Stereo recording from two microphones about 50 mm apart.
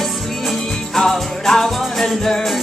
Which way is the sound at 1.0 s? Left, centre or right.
Centre.